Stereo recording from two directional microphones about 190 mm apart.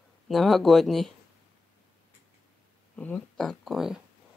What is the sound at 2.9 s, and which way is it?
Speech, 5° left (ahead or behind).